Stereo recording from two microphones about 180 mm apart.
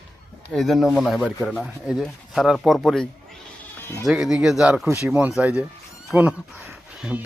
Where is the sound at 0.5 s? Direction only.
Centre (ahead or behind).